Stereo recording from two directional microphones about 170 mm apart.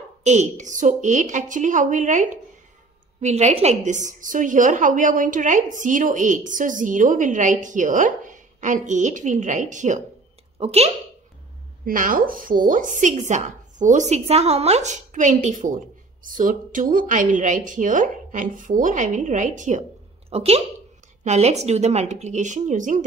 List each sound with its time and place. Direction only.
0.2 s a woman's voice: 40° right (ahead or behind)
11.8 s a woman's voice: 55° right (ahead or behind)
20.2 s a woman's voice: 35° right (ahead or behind)